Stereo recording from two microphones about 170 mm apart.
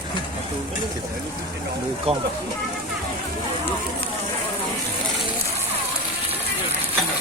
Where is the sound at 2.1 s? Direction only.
35° right (ahead or behind).